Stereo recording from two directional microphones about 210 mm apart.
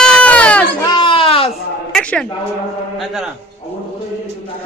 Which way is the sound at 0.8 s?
20° left (ahead or behind).